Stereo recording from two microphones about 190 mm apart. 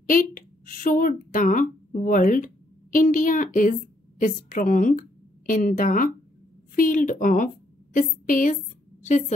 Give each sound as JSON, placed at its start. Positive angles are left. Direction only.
{"t": 0.0, "sound": "a woman's voice", "side_deg": 45}